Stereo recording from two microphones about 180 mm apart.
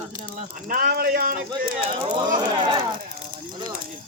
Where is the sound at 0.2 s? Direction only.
50° right (ahead or behind).